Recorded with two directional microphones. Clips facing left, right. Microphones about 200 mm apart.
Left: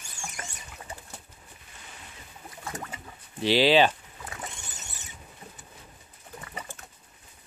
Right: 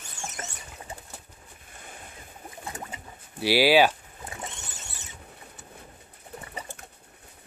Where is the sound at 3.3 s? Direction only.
10° right (ahead or behind).